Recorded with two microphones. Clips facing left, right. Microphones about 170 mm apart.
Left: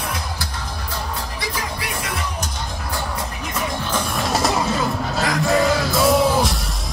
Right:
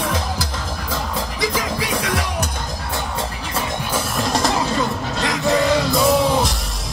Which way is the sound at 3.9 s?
Centre (ahead or behind).